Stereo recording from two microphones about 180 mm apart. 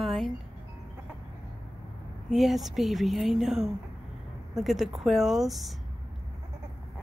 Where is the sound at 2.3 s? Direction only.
Centre (ahead or behind).